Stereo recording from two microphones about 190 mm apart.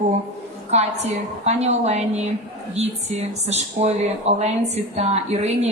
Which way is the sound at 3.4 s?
35° right (ahead or behind).